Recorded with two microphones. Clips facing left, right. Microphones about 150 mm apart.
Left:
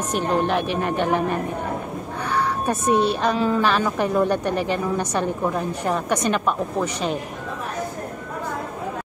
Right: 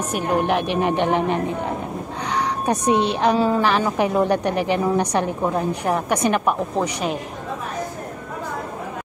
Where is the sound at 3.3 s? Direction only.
35° right (ahead or behind).